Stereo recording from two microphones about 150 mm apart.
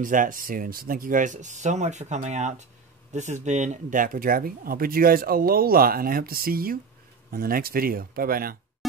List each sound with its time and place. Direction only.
0.0 s speech: 60° right (ahead or behind)